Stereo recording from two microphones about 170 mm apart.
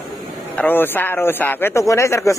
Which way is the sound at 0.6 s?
10° left (ahead or behind).